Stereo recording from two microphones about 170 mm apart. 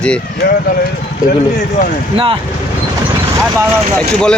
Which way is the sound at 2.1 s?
35° right (ahead or behind).